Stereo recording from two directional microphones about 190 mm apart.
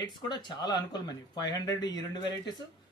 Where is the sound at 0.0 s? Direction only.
25° left (ahead or behind).